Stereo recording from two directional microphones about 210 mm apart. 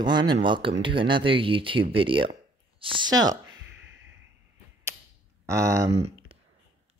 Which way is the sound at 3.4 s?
65° right (ahead or behind).